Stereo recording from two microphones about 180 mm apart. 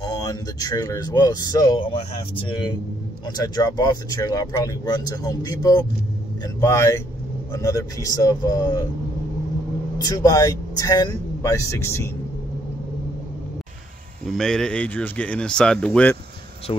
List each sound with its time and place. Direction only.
0.0 s speech: 20° left (ahead or behind)
9.9 s speech: 20° left (ahead or behind)
14.2 s a man's voice: centre (ahead or behind)